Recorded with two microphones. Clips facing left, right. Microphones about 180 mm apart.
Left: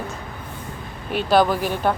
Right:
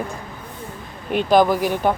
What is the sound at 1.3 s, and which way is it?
Speech, 15° right (ahead or behind).